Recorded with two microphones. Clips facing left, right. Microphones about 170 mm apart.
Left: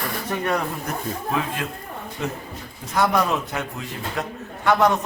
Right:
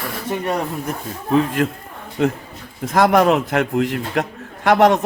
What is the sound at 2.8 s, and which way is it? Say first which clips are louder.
A man's voice: right 7 dB; 85° right.